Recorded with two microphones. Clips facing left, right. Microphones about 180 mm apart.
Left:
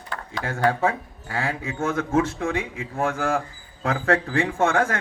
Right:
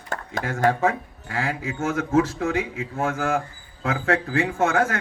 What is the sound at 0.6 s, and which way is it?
A man's voice, 30° left (ahead or behind).